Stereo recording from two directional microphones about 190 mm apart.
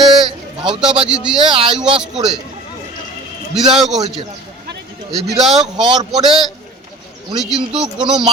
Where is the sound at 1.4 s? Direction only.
25° right (ahead or behind).